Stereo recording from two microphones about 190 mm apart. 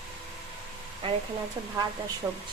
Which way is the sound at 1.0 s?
30° right (ahead or behind).